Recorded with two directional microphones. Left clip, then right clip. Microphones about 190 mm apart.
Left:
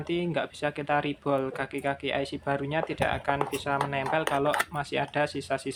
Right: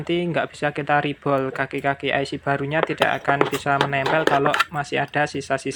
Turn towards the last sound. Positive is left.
turn(degrees=-20)  # may be behind; listen again after turning